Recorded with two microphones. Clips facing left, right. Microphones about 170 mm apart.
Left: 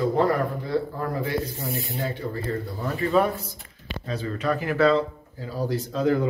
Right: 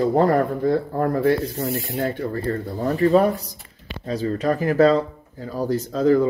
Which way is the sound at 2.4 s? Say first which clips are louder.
Right 5 dB; 40° right (ahead or behind).